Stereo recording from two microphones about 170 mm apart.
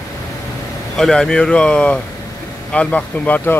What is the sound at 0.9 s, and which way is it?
Speech, 5° left (ahead or behind).